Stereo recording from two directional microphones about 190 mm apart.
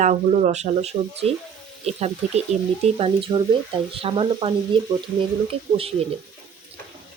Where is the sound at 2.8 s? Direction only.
30° right (ahead or behind).